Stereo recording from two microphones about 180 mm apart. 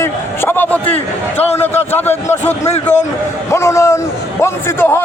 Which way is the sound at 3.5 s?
15° left (ahead or behind).